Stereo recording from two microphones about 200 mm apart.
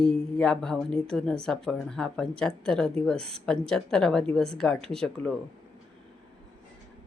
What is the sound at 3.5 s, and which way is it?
Speech, 5° left (ahead or behind).